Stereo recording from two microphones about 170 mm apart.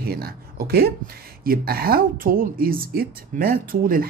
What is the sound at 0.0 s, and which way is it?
Speech, 65° right (ahead or behind).